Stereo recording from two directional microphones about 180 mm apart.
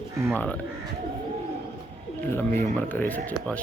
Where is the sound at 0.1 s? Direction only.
15° right (ahead or behind).